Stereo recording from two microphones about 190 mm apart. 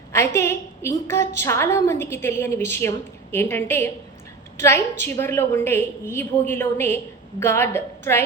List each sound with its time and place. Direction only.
0.3 s a woman's voice: 15° left (ahead or behind)